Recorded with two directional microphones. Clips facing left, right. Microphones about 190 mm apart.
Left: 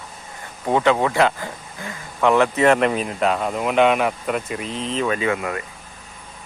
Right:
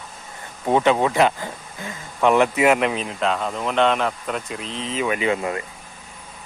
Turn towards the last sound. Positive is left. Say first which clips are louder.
# even
turn(degrees=-25)  # may be behind; listen again after turning